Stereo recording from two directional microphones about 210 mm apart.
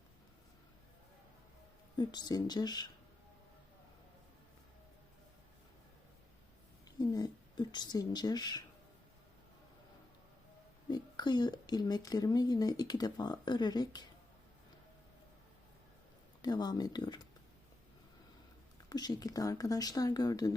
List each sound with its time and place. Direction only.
2.0 s speech: 20° left (ahead or behind)
7.0 s speech: 20° left (ahead or behind)
10.8 s speech: 20° left (ahead or behind)
16.4 s speech: 20° left (ahead or behind)
18.9 s speech: 20° left (ahead or behind)